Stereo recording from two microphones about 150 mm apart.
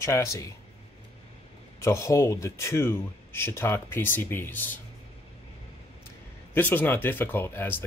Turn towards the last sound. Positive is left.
turn(degrees=15)  # may be behind; listen again after turning